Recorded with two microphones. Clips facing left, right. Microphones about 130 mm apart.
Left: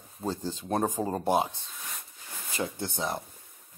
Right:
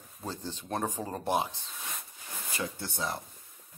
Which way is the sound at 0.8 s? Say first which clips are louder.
Left 5 dB; 15° left (ahead or behind).